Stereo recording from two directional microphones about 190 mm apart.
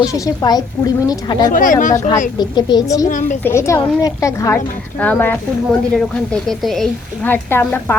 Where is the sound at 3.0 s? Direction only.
45° left (ahead or behind).